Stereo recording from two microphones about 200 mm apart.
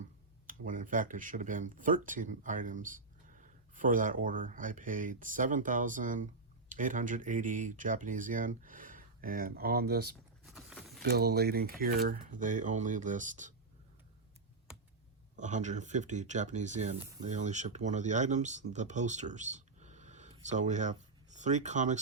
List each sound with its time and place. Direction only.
0.4 s speech: 40° right (ahead or behind)
10.4 s a sound: centre (ahead or behind)
11.0 s speech: 50° right (ahead or behind)
15.4 s speech: 35° right (ahead or behind)
18.7 s a sound: 35° right (ahead or behind)
20.5 s speech: 35° right (ahead or behind)